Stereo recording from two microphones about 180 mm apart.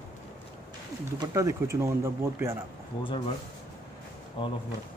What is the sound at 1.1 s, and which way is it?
Speech, 15° right (ahead or behind).